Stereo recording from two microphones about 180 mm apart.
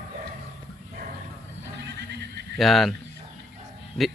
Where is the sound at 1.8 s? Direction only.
65° right (ahead or behind).